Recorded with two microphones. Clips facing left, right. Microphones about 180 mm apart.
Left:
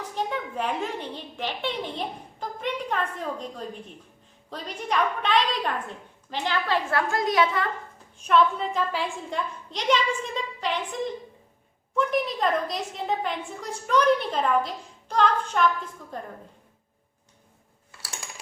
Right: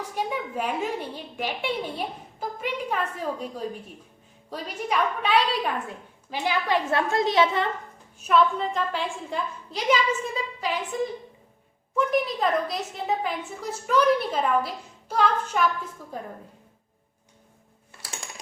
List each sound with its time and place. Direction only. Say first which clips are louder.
0.0 s a woman's voice: right 1 dB; 10° right (ahead or behind); by 7.7 s 25° right (ahead or behind)
8.2 s a woman's voice: even; centre (ahead or behind)